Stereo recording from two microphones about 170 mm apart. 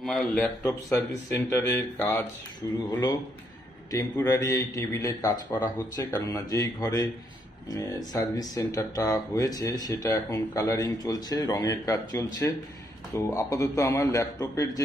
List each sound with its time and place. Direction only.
0.0 s a man's voice: centre (ahead or behind); by 7.1 s 20° left (ahead or behind)
8.1 s speech: 20° left (ahead or behind)